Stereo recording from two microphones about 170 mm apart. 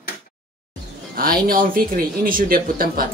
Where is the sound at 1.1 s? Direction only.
60° right (ahead or behind).